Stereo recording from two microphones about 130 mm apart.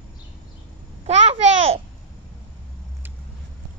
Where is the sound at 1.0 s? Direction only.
50° right (ahead or behind).